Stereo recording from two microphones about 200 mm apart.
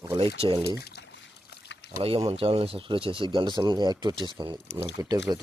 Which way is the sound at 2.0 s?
30° right (ahead or behind).